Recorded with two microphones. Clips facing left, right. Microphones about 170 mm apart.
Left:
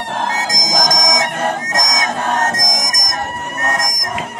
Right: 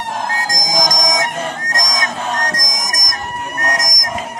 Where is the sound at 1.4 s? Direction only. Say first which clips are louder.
Left 4 dB; 60° left (ahead or behind).